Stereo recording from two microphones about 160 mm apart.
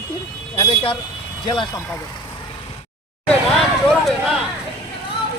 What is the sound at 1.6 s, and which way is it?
Speech, 20° left (ahead or behind).